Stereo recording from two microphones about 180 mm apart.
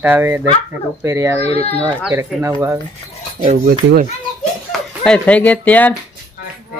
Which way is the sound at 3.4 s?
40° right (ahead or behind).